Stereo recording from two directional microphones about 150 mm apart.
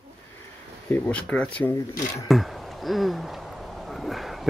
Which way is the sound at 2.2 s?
Centre (ahead or behind).